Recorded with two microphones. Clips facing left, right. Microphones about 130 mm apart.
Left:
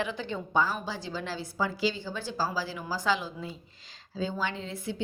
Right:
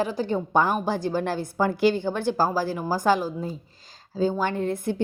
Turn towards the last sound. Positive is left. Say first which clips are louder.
# right 8 dB
turn(degrees=-50)  # may be behind; listen again after turning